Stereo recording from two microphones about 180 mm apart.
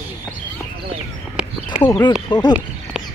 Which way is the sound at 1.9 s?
20° left (ahead or behind).